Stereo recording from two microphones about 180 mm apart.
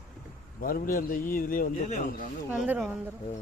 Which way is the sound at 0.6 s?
55° left (ahead or behind).